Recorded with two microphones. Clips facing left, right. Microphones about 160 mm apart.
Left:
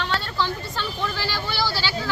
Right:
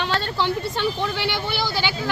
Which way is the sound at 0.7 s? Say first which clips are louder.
Right 5 dB; 20° right (ahead or behind).